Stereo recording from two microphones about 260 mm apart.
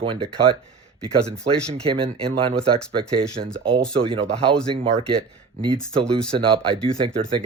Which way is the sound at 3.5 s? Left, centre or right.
Centre.